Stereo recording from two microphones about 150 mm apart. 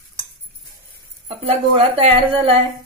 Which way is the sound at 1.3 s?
40° right (ahead or behind).